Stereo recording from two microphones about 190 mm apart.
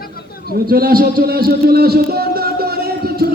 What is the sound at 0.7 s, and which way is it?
A man's voice, 50° right (ahead or behind).